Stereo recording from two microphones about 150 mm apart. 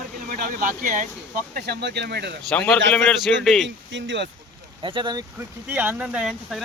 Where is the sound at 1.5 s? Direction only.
90° right.